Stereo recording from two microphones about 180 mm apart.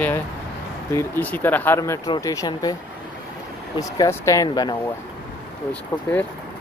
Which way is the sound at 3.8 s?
20° left (ahead or behind).